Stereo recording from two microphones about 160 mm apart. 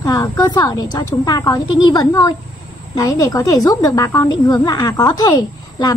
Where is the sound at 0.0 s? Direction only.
20° left (ahead or behind).